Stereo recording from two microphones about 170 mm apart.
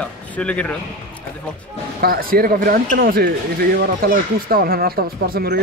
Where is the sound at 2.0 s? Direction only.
60° right (ahead or behind).